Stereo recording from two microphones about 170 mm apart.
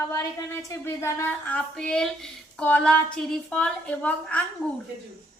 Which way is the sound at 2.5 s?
5° left (ahead or behind).